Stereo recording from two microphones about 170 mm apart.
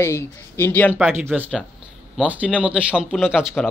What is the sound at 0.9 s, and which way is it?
A man's voice, 10° right (ahead or behind).